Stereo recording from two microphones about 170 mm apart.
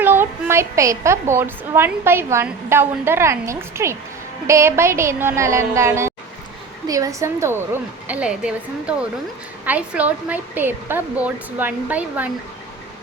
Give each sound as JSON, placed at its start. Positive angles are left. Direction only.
{"t": 0.0, "sound": "a woman's voice", "side_deg": -10}